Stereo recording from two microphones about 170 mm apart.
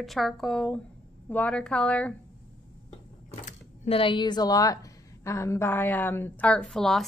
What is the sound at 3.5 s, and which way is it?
A woman's voice, 35° left (ahead or behind).